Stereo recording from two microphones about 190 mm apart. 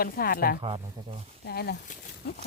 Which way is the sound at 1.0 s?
20° right (ahead or behind).